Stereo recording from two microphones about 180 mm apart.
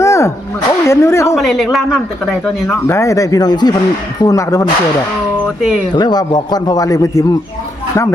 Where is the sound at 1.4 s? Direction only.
Centre (ahead or behind); by 4.6 s 20° left (ahead or behind).